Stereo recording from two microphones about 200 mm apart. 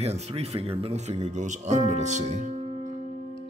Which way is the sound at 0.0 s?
30° right (ahead or behind).